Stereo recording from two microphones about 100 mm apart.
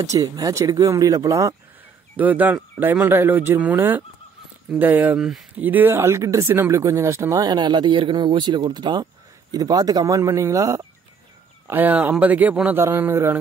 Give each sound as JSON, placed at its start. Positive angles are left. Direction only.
{"t": 0.0, "sound": "speech", "side_deg": -35}
{"t": 2.1, "sound": "speech", "side_deg": -15}
{"t": 11.6, "sound": "speech", "side_deg": -20}